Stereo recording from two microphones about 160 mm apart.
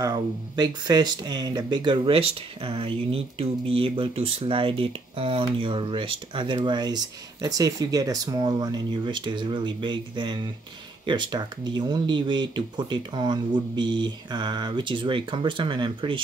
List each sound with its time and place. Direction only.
0.0 s speech: 25° right (ahead or behind)